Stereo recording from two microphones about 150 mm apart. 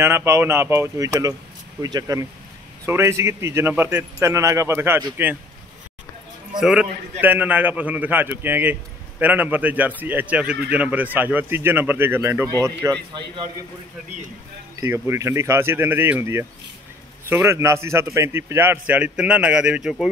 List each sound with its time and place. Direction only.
0.0 s a man's voice: 20° right (ahead or behind)
6.6 s a man's voice: 5° right (ahead or behind); by 12.9 s 20° right (ahead or behind)
14.8 s a man's voice: 20° right (ahead or behind)